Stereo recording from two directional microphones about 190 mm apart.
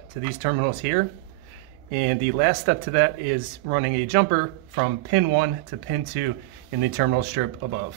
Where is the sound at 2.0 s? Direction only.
60° right (ahead or behind).